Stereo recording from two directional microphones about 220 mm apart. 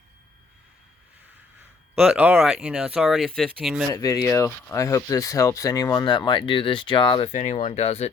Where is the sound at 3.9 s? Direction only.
15° left (ahead or behind).